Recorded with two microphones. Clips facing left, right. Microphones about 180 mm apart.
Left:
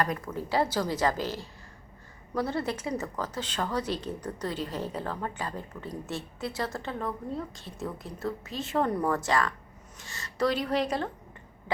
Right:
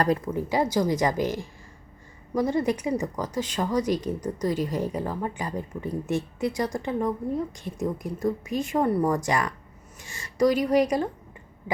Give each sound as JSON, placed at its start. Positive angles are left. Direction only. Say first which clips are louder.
{"t": 0.0, "sound": "speech", "louder": "right 6 dB", "side_deg": -30}
{"t": 0.3, "sound": "speech", "louder": "right 4 dB", "side_deg": -15}